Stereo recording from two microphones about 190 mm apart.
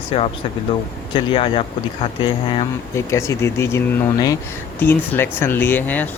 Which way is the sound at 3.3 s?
15° left (ahead or behind).